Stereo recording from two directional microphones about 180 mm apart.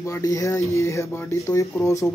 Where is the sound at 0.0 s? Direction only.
15° left (ahead or behind).